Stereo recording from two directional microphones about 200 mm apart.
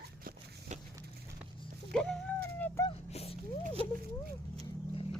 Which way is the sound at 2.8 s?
30° left (ahead or behind).